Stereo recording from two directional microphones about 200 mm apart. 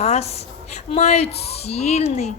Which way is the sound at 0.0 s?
30° left (ahead or behind).